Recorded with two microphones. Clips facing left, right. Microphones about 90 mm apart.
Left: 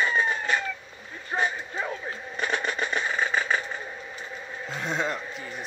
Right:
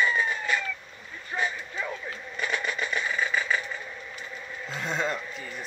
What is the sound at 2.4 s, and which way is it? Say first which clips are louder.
Vehicle: left 2 dB; 35° left (ahead or behind).